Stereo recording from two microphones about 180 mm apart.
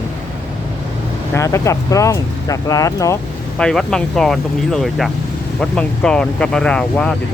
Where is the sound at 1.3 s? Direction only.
15° left (ahead or behind).